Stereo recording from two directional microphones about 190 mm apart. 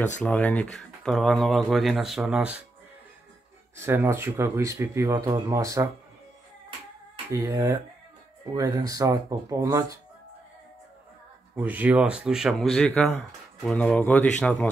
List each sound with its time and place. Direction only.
0.2 s speech: 5° left (ahead or behind)
3.8 s speech: 10° right (ahead or behind)
7.3 s speech: 15° right (ahead or behind)
11.5 s speech: 10° right (ahead or behind)